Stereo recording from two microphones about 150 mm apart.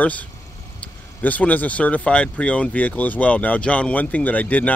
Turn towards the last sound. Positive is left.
turn(degrees=10)  # may be behind; listen again after turning